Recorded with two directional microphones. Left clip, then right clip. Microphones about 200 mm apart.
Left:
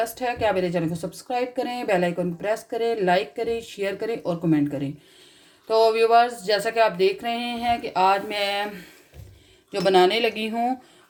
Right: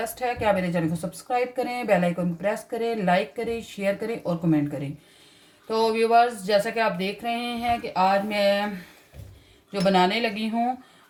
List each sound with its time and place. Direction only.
0.0 s speech: 35° left (ahead or behind)
5.6 s speech: 40° left (ahead or behind)
9.7 s a woman's voice: 50° left (ahead or behind)